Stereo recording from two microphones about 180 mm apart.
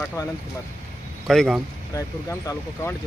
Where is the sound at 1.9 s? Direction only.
15° left (ahead or behind).